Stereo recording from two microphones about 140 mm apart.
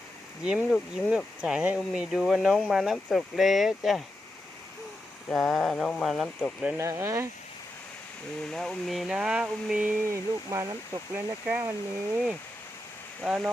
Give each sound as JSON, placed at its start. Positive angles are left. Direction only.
{"t": 0.4, "sound": "speech", "side_deg": -5}
{"t": 5.3, "sound": "speech", "side_deg": 5}
{"t": 6.7, "sound": "speech", "side_deg": -20}
{"t": 8.4, "sound": "speech", "side_deg": 5}
{"t": 10.1, "sound": "speech", "side_deg": -20}
{"t": 13.2, "sound": "speech", "side_deg": 0}